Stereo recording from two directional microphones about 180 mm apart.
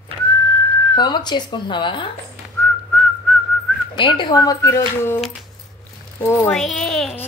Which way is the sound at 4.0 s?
25° left (ahead or behind).